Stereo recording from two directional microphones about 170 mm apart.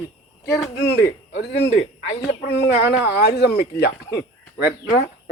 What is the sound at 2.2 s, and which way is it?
Speech, 70° left (ahead or behind).